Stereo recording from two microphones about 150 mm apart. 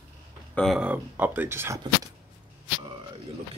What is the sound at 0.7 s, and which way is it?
Speech, 10° right (ahead or behind).